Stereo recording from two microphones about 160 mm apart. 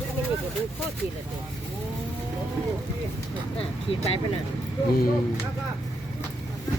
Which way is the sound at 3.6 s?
35° left (ahead or behind).